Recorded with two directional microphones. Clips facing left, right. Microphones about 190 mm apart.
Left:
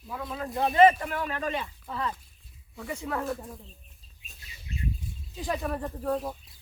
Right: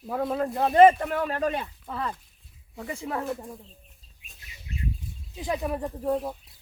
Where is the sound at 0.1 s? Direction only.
50° right (ahead or behind).